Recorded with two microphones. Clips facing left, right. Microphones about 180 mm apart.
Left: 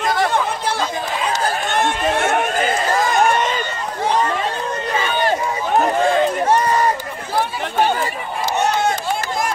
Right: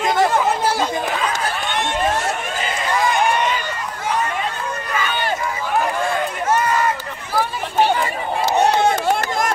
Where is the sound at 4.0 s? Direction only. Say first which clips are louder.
Left 4 dB; 30° left (ahead or behind).